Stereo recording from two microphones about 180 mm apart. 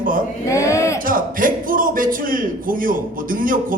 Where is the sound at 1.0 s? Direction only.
50° right (ahead or behind).